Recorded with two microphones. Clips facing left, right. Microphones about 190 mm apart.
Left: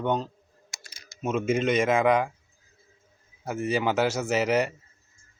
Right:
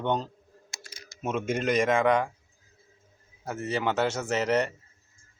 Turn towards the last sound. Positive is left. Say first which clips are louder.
# left 2 dB
turn(degrees=10)  # may be behind; listen again after turning